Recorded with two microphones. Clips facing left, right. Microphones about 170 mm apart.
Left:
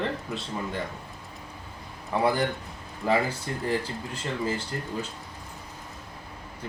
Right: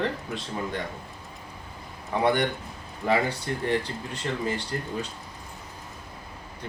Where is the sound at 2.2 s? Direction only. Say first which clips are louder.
Right 1 dB; centre (ahead or behind).